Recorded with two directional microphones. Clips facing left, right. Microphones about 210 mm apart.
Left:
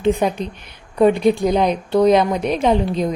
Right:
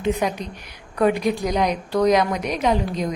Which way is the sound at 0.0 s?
30° left (ahead or behind).